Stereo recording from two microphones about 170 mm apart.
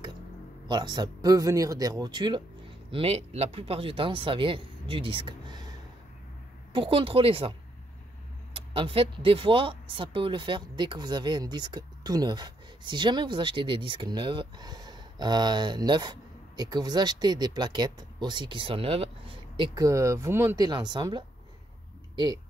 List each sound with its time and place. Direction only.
0.7 s speech: 25° right (ahead or behind)
6.7 s speech: 30° right (ahead or behind)
8.5 s speech: 30° right (ahead or behind)